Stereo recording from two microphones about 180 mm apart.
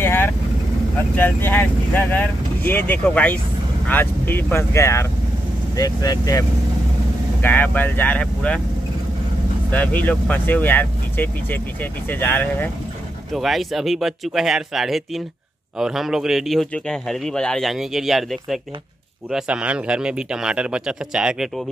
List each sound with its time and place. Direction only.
0.0 s vehicle: 10° left (ahead or behind)
1.1 s speech: 10° left (ahead or behind)
7.4 s speech: 10° left (ahead or behind)
9.7 s speech: 10° left (ahead or behind)